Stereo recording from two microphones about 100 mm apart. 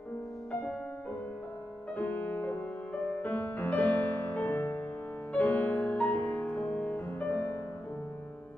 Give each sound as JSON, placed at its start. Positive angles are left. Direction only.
{"t": 2.0, "sound": "music", "side_deg": 15}